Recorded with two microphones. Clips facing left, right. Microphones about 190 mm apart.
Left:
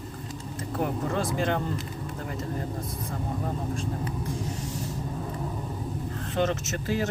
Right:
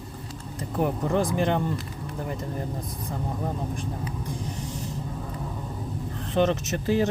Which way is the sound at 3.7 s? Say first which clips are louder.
Left 1 dB; 15° right (ahead or behind).